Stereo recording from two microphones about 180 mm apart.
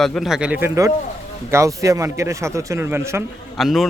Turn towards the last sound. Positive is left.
turn(degrees=0)  # may be behind; listen again after turning